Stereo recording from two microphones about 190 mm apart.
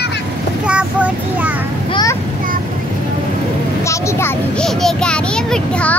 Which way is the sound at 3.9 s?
15° left (ahead or behind).